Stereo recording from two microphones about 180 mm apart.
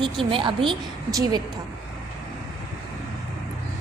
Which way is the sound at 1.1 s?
20° right (ahead or behind).